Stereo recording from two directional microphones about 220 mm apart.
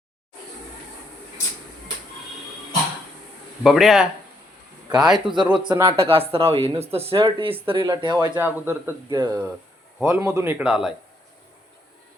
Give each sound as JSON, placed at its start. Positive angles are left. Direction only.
{"t": 3.6, "sound": "speech", "side_deg": 0}
{"t": 5.3, "sound": "speech", "side_deg": -20}
{"t": 5.5, "sound": "speech", "side_deg": -10}
{"t": 6.0, "sound": "speech", "side_deg": -25}
{"t": 8.4, "sound": "speech", "side_deg": -10}